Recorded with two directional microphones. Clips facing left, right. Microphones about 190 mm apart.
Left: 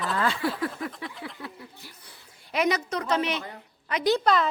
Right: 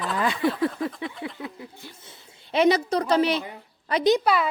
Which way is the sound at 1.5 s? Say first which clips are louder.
Right 4 dB; 25° right (ahead or behind).